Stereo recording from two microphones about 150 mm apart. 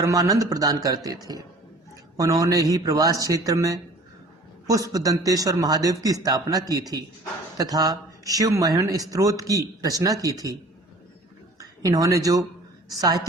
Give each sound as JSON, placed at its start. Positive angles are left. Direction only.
{"t": 0.0, "sound": "speech", "side_deg": -25}